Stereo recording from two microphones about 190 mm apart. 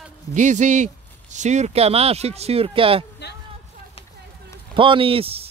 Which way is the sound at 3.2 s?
60° left (ahead or behind).